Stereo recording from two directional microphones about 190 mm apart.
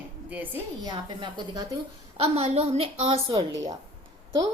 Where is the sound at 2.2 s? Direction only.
35° right (ahead or behind).